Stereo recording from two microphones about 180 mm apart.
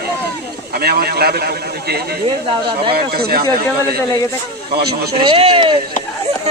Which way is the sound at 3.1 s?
60° right (ahead or behind).